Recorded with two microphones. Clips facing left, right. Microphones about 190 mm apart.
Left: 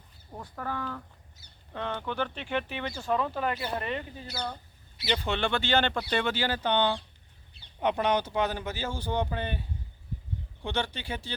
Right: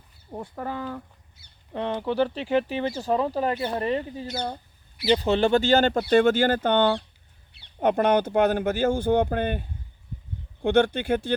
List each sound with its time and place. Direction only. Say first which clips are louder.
0.3 s speech: right 4 dB; 20° right (ahead or behind)
2.0 s speech: right 8 dB; 35° right (ahead or behind); by 11.3 s 55° right (ahead or behind)